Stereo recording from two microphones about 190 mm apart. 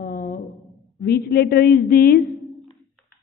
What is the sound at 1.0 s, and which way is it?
A woman's voice, 55° left (ahead or behind).